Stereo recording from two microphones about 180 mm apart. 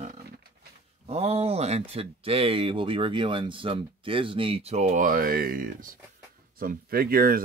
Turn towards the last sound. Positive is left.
turn(degrees=-55)  # may be behind; listen again after turning